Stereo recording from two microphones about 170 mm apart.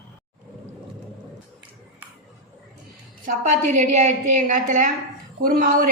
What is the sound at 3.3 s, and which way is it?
A man's voice, 45° right (ahead or behind).